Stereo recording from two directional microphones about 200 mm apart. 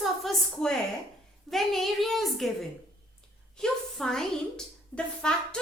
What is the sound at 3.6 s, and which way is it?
A woman's voice, 5° left (ahead or behind).